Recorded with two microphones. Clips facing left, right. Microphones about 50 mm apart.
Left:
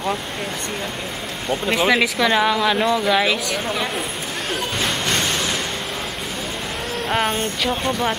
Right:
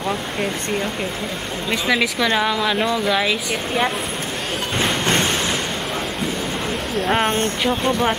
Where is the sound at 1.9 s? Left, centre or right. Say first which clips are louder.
Even; centre.